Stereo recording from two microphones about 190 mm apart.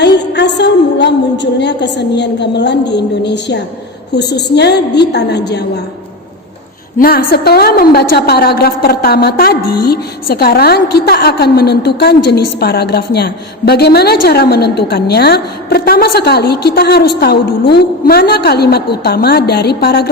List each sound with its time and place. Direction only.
0.0 s a woman's voice: 65° left (ahead or behind)
7.0 s a woman's voice: 55° left (ahead or behind)